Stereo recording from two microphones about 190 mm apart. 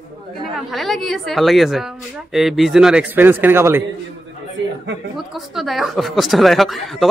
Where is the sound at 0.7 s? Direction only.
Centre (ahead or behind).